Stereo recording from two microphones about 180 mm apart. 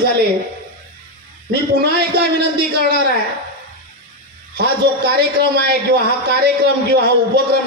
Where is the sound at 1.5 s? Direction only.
65° right (ahead or behind).